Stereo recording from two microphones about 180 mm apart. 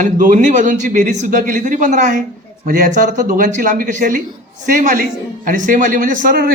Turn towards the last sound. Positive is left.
turn(degrees=-55)  # may be behind; listen again after turning